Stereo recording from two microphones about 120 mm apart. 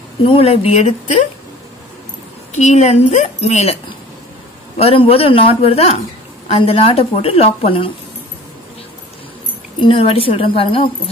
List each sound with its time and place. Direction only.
0.2 s speech: 55° left (ahead or behind); by 1.2 s 80° left
2.5 s a woman's voice: 75° left (ahead or behind)
4.7 s a woman's voice: 55° left (ahead or behind)
9.8 s a woman's voice: 50° left (ahead or behind)